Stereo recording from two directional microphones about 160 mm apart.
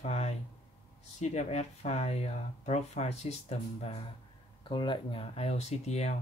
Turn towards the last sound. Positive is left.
turn(degrees=45)  # may be behind; listen again after turning